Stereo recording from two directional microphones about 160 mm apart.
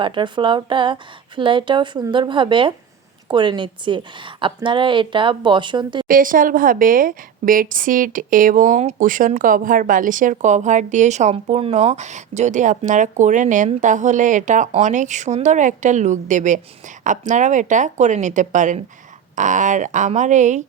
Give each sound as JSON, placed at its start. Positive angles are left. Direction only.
{"t": 0.0, "sound": "a woman's voice", "side_deg": -30}
{"t": 6.1, "sound": "a woman's voice", "side_deg": -60}